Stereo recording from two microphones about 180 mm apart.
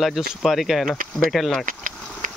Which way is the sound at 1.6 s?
45° right (ahead or behind).